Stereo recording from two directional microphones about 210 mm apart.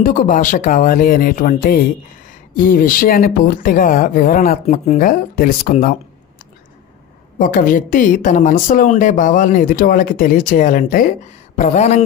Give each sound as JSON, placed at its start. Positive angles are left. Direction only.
{"t": 0.0, "sound": "a woman's voice", "side_deg": 40}
{"t": 7.3, "sound": "a woman's voice", "side_deg": 40}